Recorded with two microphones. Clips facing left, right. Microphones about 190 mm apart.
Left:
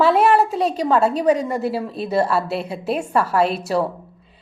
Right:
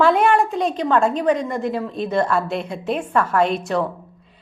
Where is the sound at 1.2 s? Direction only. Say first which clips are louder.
Left 2 dB; 10° left (ahead or behind).